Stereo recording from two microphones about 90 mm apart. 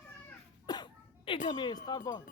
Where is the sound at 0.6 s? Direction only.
55° left (ahead or behind).